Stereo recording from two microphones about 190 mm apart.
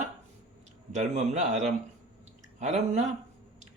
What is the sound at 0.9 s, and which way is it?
Speech, 35° right (ahead or behind).